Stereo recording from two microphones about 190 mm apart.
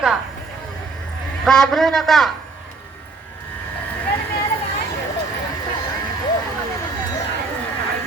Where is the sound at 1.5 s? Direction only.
Centre (ahead or behind).